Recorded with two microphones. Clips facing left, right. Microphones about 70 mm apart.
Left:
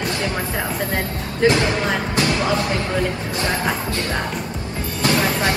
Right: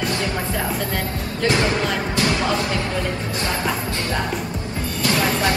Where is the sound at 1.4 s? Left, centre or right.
Centre.